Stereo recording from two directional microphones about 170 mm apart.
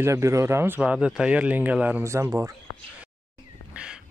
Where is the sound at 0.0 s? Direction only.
15° right (ahead or behind).